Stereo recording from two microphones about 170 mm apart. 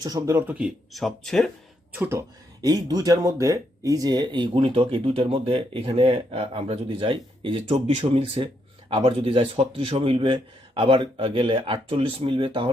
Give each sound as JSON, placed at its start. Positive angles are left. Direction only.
{"t": 0.0, "sound": "speech", "side_deg": -20}
{"t": 0.9, "sound": "speech", "side_deg": 0}
{"t": 1.9, "sound": "speech", "side_deg": -10}